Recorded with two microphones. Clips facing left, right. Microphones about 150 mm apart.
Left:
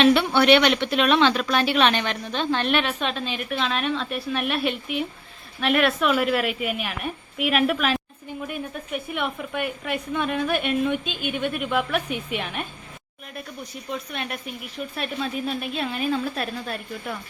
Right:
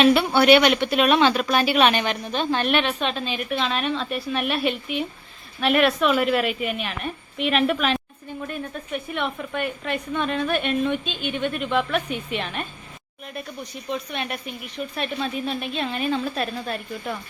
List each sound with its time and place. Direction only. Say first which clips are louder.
0.0 s a woman's voice: right 1 dB; 5° right (ahead or behind); by 12.6 s 10° left (ahead or behind)
13.9 s speech: right 2 dB; centre (ahead or behind)